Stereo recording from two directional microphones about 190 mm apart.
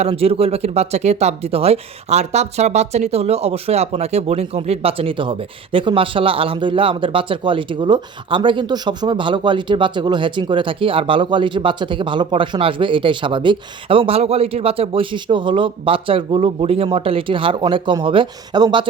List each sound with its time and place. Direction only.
0.0 s speech: 30° right (ahead or behind)